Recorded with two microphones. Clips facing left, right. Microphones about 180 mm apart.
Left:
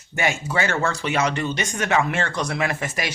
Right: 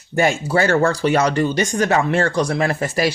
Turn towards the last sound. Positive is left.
turn(degrees=-35)  # may be behind; listen again after turning